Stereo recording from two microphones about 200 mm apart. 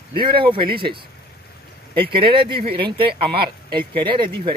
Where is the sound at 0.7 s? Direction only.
50° right (ahead or behind).